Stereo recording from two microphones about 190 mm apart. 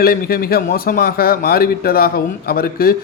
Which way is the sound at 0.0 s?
50° left (ahead or behind).